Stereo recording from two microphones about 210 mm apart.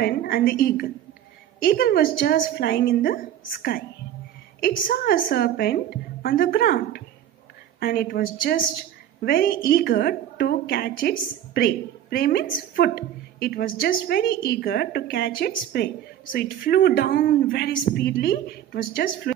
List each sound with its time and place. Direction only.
0.0 s a woman's voice: 45° left (ahead or behind)